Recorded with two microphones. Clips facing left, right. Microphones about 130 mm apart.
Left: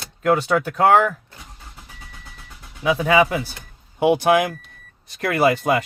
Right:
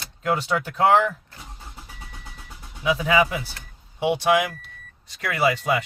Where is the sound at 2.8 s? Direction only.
55° left (ahead or behind).